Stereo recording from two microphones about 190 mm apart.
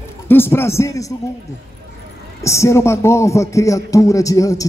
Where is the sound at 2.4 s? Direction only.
15° left (ahead or behind).